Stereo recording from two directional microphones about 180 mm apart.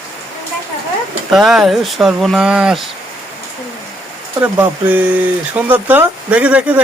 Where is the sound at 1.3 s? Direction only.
Centre (ahead or behind).